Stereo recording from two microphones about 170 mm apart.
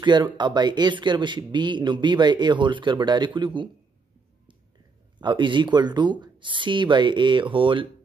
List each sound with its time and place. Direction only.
0.0 s speech: 25° right (ahead or behind)
5.2 s speech: 30° right (ahead or behind)